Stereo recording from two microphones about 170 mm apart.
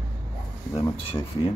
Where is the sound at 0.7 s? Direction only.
20° left (ahead or behind).